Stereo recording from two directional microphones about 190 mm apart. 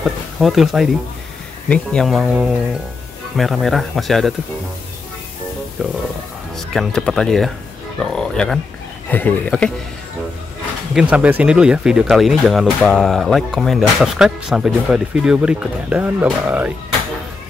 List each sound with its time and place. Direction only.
0.4 s speech: centre (ahead or behind)
5.8 s speech: centre (ahead or behind)
11.0 s speech: 5° right (ahead or behind)